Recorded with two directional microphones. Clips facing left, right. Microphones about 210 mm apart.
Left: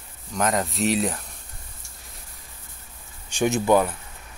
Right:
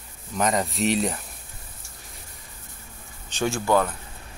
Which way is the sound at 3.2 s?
15° left (ahead or behind).